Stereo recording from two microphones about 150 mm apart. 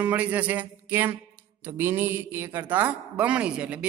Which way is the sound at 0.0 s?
10° right (ahead or behind).